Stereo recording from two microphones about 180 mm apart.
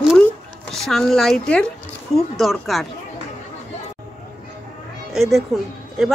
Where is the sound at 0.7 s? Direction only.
Centre (ahead or behind).